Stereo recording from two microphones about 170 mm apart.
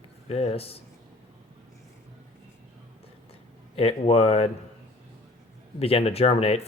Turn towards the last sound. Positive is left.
turn(degrees=35)  # may be behind; listen again after turning